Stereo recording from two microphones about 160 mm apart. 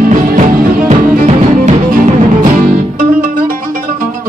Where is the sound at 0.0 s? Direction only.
60° right (ahead or behind).